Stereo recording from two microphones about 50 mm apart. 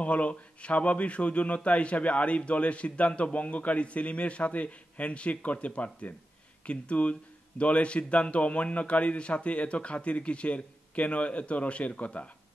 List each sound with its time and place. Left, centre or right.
0.0 s a man's voice: left